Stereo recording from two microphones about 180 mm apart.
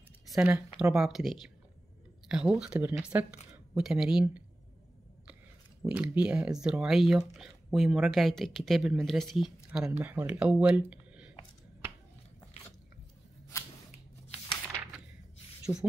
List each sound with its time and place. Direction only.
0.3 s speech: 5° right (ahead or behind)
5.8 s speech: 5° right (ahead or behind)
9.7 s speech: 10° right (ahead or behind)
10.9 s a sound: 5° right (ahead or behind)
13.5 s scissors: 15° left (ahead or behind)